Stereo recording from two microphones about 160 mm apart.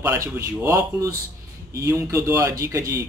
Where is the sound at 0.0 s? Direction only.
15° right (ahead or behind).